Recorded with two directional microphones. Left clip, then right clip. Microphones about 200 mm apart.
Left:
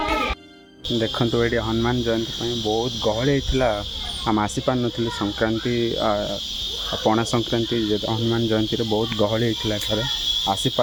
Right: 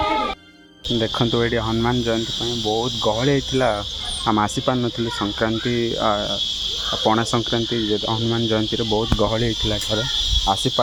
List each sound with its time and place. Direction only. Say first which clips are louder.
0.9 s cricket: right 1 dB; 15° right (ahead or behind)
10.4 s speech: right 2 dB; 20° right (ahead or behind)